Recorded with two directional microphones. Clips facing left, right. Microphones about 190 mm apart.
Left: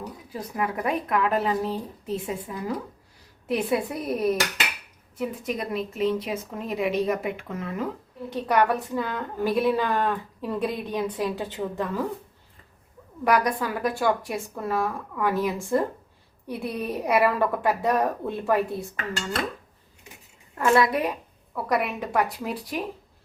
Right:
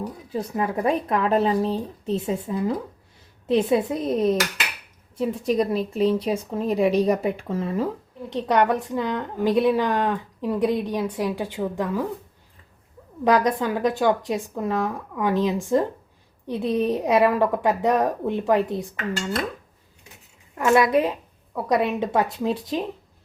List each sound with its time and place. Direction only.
0.3 s a woman's voice: 25° right (ahead or behind); by 12.0 s 10° right (ahead or behind)
13.2 s a woman's voice: 25° right (ahead or behind)
20.7 s a woman's voice: 20° right (ahead or behind)